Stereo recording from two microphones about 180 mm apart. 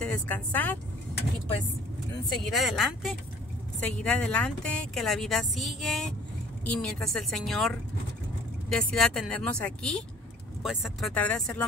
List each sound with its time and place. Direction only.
0.0 s speech: 10° left (ahead or behind)
2.5 s speech: centre (ahead or behind)